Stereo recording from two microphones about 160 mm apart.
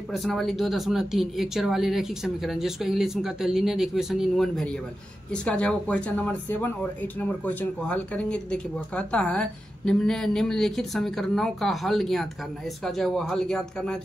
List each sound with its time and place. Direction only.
0.1 s speech: centre (ahead or behind)